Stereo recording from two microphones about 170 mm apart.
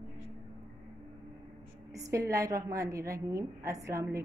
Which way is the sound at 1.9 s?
20° right (ahead or behind).